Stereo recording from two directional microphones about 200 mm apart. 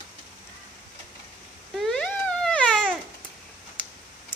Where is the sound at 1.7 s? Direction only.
Centre (ahead or behind).